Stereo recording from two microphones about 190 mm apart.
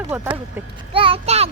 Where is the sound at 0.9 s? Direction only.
30° right (ahead or behind).